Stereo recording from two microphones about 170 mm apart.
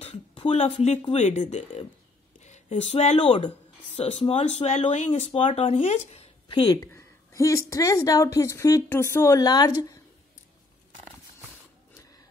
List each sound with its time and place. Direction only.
0.0 s speech: 35° left (ahead or behind)
6.5 s a woman's voice: 25° left (ahead or behind)